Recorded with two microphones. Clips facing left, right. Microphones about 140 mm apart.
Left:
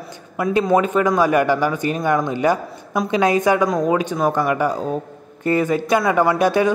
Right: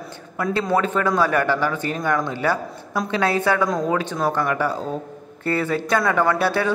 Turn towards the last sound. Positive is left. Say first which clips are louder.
# left 4 dB
turn(degrees=15)  # may be behind; listen again after turning